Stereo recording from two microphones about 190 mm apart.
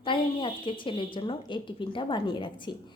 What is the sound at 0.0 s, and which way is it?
Speech, 25° left (ahead or behind).